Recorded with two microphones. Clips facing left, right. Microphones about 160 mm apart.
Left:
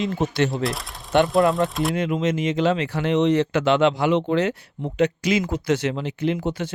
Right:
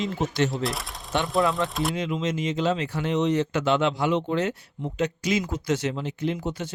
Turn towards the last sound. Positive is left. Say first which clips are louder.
# left 4 dB
turn(degrees=85)